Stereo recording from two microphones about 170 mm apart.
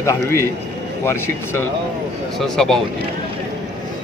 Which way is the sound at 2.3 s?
Centre (ahead or behind).